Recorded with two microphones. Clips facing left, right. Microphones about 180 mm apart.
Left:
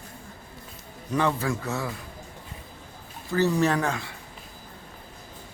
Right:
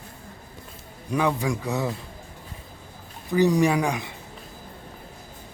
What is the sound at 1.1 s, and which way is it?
Speech, 10° right (ahead or behind).